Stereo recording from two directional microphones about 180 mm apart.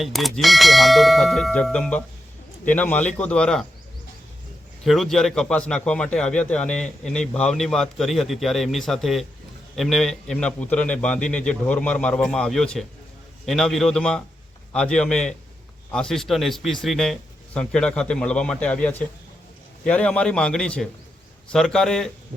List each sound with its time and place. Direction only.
0.0 s a man's voice: centre (ahead or behind)
4.8 s a man's voice: centre (ahead or behind)